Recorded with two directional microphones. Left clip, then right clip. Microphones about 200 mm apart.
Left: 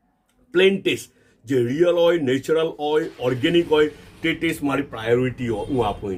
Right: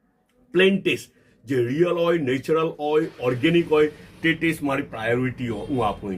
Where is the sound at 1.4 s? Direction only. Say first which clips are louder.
Left 3 dB; 15° left (ahead or behind).